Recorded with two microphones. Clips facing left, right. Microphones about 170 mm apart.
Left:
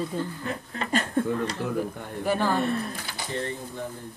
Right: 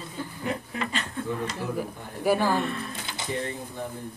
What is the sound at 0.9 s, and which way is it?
Speech, 45° left (ahead or behind).